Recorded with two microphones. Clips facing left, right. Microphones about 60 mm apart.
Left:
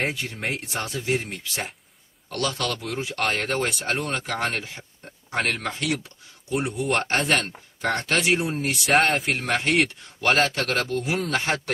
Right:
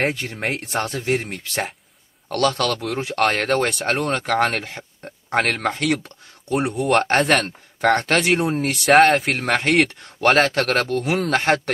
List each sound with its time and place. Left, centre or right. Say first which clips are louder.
0.0 s speech: right 4 dB; right
9.0 s speech: right 7 dB; right
9.3 s speech: right 4 dB; right